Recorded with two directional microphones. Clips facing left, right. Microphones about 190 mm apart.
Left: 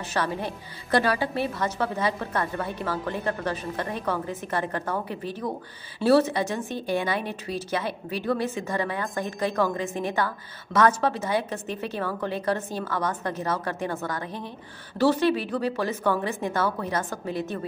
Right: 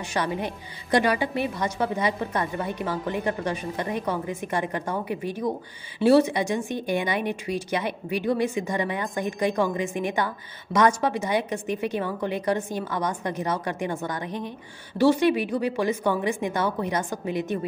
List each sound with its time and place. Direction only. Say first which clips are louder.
0.1 s a woman's voice: right 1 dB; 15° right (ahead or behind)